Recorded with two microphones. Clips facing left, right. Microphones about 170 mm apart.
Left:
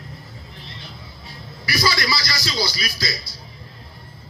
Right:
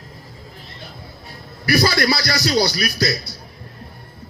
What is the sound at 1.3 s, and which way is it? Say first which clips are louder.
A man's voice: right 9 dB; 55° right (ahead or behind).